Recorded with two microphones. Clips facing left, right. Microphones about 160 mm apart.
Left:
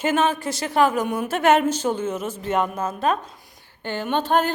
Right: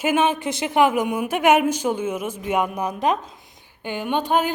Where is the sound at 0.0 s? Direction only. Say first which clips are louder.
Right 1 dB; 10° right (ahead or behind).